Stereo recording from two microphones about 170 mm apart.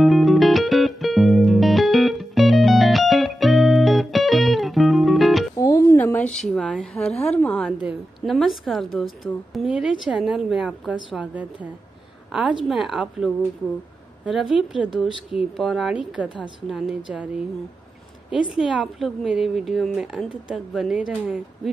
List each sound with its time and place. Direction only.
0.0 s music: centre (ahead or behind)
5.6 s a sound: 20° left (ahead or behind)
7.8 s a woman's voice: centre (ahead or behind)
18.3 s a woman's voice: 5° right (ahead or behind)